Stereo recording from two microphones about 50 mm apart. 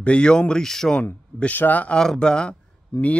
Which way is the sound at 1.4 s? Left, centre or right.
Left.